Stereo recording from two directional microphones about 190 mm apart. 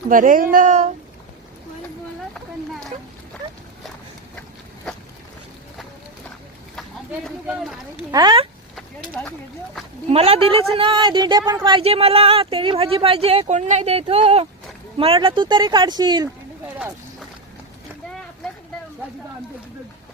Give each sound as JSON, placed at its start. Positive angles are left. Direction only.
{"t": 0.1, "sound": "speech", "side_deg": -45}
{"t": 7.3, "sound": "speech", "side_deg": 0}
{"t": 8.1, "sound": "a woman's voice", "side_deg": -25}
{"t": 10.1, "sound": "a woman's voice", "side_deg": -30}
{"t": 16.6, "sound": "a sound", "side_deg": -5}